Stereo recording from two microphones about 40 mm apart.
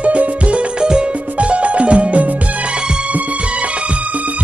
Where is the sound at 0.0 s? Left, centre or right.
Right.